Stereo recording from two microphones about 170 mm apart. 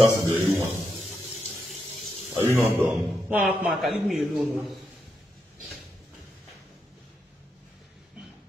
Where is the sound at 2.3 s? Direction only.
15° right (ahead or behind).